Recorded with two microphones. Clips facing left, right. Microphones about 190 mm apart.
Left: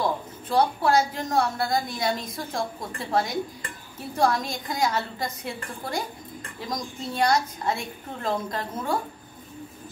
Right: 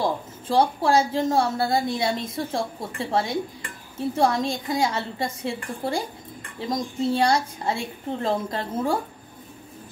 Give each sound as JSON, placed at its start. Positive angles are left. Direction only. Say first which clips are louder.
{"t": 0.0, "sound": "a woman's voice", "louder": "right 1 dB", "side_deg": -30}